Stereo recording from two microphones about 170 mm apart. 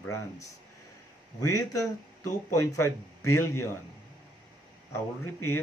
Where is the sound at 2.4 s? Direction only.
15° left (ahead or behind).